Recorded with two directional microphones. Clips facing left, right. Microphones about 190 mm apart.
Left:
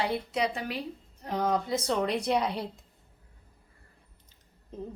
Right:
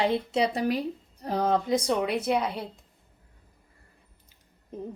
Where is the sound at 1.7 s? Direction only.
15° right (ahead or behind).